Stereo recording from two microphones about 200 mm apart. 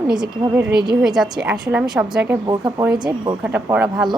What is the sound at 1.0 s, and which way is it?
A woman's voice, centre (ahead or behind).